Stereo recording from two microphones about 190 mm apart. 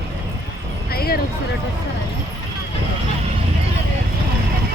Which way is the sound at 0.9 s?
55° left (ahead or behind).